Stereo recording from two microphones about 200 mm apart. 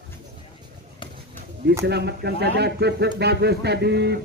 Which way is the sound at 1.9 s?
55° right (ahead or behind).